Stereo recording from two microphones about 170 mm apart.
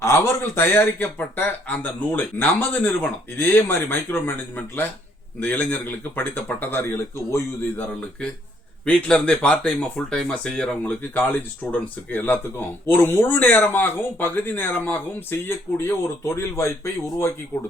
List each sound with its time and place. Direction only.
0.0 s speech: 15° left (ahead or behind)